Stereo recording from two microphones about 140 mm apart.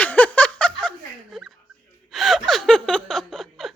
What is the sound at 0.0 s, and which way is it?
Snicker, 10° left (ahead or behind).